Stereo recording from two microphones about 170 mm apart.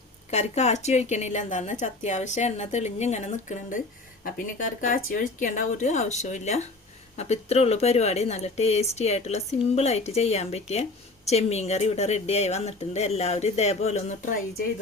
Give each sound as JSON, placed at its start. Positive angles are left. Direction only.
{"t": 0.3, "sound": "speech", "side_deg": 40}